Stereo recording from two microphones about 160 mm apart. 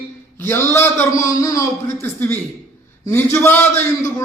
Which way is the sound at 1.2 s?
20° left (ahead or behind).